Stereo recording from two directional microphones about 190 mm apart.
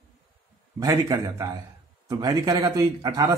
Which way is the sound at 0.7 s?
15° right (ahead or behind).